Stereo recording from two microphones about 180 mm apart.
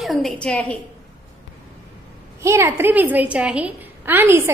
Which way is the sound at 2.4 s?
15° right (ahead or behind).